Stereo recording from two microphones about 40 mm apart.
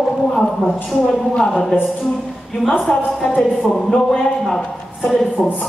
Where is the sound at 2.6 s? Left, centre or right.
Centre.